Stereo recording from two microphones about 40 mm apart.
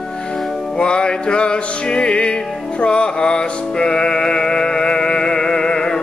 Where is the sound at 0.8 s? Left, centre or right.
Left.